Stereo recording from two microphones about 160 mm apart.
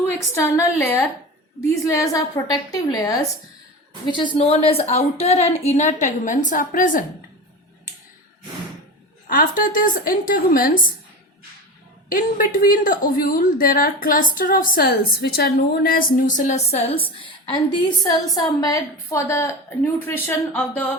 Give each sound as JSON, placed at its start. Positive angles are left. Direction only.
{"t": 0.4, "sound": "a woman's voice", "side_deg": 15}
{"t": 9.3, "sound": "a woman's voice", "side_deg": 60}
{"t": 12.0, "sound": "a woman's voice", "side_deg": 65}